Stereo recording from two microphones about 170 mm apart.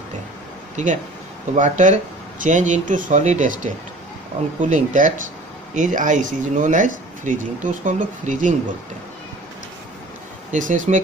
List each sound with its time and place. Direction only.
1.5 s speech: 45° right (ahead or behind)
10.5 s speech: 50° right (ahead or behind)